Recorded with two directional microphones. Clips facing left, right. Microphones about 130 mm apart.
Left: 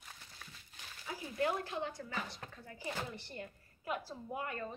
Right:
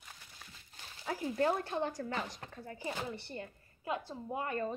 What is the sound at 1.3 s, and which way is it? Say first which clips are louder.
A woman's voice: right 3 dB; 35° right (ahead or behind).